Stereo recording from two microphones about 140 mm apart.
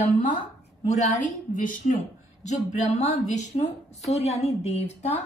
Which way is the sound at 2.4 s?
55° left (ahead or behind).